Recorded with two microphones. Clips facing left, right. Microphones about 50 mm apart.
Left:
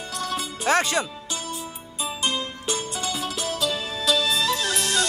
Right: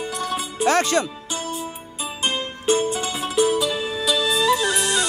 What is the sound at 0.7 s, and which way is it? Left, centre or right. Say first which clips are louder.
Speech: right 3 dB; centre.